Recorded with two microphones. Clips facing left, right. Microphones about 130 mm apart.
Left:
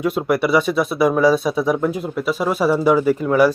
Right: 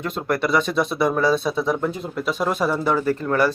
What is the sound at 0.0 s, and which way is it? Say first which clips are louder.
Speech: left 5 dB; 10° left (ahead or behind).